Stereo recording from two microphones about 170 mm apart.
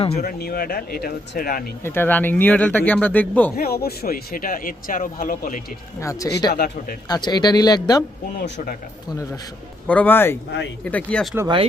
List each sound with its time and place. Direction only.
0.1 s speech: 65° left (ahead or behind)
1.8 s speech: 10° left (ahead or behind)
3.5 s speech: 60° left (ahead or behind)
6.0 s speech: 20° left (ahead or behind)
6.5 s speech: 65° left (ahead or behind)
7.1 s speech: 25° left (ahead or behind)
8.4 s speech: 75° left (ahead or behind)
9.8 s speech: 10° left (ahead or behind)